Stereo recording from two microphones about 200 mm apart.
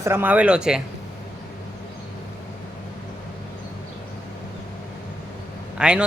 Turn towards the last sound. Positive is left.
turn(degrees=-5)  # may be behind; listen again after turning